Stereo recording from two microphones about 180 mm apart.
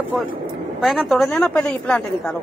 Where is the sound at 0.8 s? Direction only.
Centre (ahead or behind).